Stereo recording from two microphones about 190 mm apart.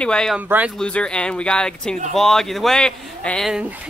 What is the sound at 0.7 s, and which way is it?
Speech, 5° left (ahead or behind).